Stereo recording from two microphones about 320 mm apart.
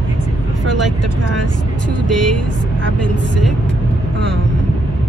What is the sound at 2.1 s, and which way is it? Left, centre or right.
Speech, centre.